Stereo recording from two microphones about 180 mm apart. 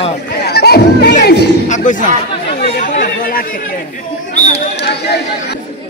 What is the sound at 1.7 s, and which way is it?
Chatter, 45° left (ahead or behind).